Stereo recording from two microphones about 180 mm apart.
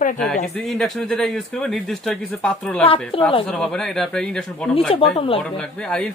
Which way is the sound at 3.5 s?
5° left (ahead or behind).